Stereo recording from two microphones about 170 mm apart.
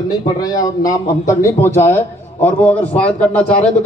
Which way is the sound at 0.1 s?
20° left (ahead or behind).